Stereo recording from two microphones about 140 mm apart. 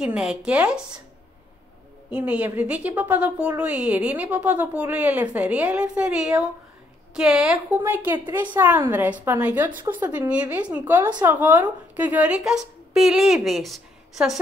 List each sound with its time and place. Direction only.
0.0 s a woman's voice: 5° right (ahead or behind)
2.0 s a woman's voice: 10° right (ahead or behind)